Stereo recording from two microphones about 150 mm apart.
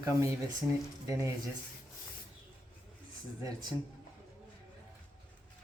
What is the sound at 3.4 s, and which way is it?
Speech, 25° right (ahead or behind).